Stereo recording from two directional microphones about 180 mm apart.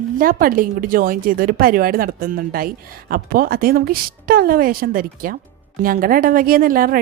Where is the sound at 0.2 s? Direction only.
50° right (ahead or behind).